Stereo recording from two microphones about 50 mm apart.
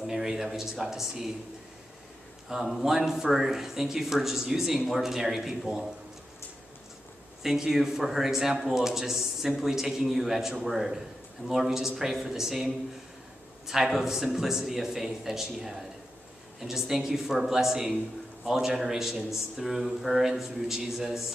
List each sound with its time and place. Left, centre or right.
0.0 s speech: centre
2.5 s speech: centre
7.4 s a man's voice: centre